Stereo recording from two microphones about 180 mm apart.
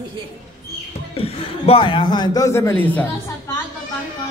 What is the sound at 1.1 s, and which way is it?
A man's voice, 30° left (ahead or behind).